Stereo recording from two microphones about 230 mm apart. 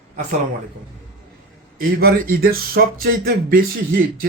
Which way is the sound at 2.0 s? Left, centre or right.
Right.